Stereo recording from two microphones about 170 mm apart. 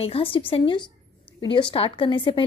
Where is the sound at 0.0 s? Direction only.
35° left (ahead or behind).